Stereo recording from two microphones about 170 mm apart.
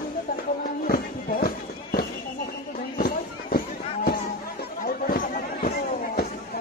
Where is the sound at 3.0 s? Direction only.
55° left (ahead or behind).